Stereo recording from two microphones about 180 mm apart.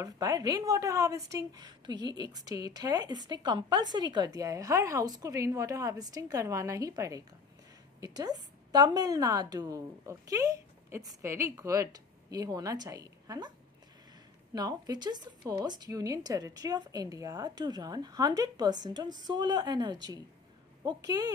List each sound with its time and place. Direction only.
0.0 s speech: 20° right (ahead or behind)
14.5 s speech: 20° right (ahead or behind)